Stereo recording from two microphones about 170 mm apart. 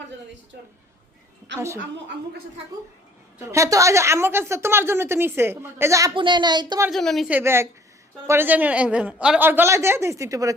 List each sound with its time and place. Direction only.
1.5 s a woman's voice: 15° right (ahead or behind)
3.3 s a woman's voice: 20° right (ahead or behind)
6.1 s speech: 30° right (ahead or behind)
6.9 s a woman's voice: centre (ahead or behind)
7.3 s a woman's voice: 10° right (ahead or behind)